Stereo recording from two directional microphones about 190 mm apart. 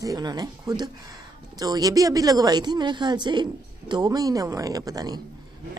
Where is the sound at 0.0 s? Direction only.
20° right (ahead or behind).